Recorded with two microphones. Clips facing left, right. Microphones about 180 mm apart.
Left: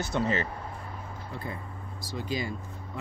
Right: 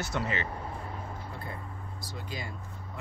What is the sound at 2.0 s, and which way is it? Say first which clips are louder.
Speech: left 8 dB; 90° left.